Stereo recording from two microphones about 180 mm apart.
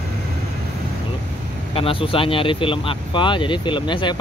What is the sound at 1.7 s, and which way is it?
Speech, 30° left (ahead or behind).